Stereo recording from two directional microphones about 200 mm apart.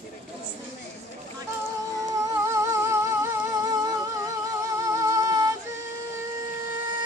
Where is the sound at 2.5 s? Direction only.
15° right (ahead or behind).